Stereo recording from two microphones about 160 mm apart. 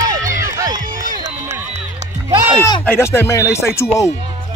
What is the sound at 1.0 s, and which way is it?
Music, 55° right (ahead or behind).